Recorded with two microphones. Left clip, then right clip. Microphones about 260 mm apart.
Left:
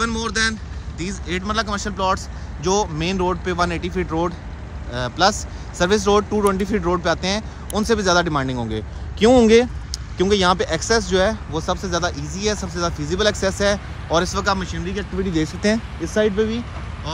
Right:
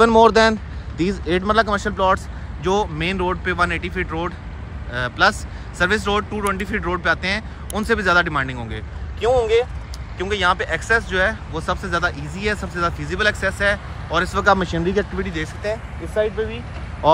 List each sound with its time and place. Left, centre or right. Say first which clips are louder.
0.0 s speech: right 9 dB; centre
9.2 s speech: left 4 dB; left
14.3 s speech: right 5 dB; centre
15.2 s speech: left 4 dB; centre
17.0 s speech: right 16 dB; centre